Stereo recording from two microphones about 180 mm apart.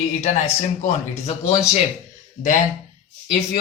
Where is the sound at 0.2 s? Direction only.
40° left (ahead or behind).